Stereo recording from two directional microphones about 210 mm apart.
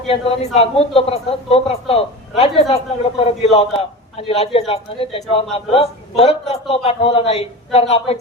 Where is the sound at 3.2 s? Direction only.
30° left (ahead or behind).